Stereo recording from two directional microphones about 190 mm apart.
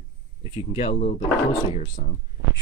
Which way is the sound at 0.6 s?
30° left (ahead or behind).